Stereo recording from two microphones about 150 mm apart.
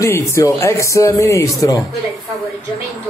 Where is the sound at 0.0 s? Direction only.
20° left (ahead or behind).